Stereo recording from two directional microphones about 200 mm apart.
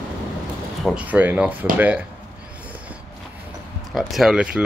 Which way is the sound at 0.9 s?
5° right (ahead or behind).